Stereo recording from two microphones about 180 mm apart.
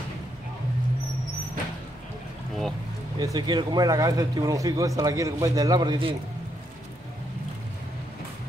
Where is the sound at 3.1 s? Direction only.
25° right (ahead or behind).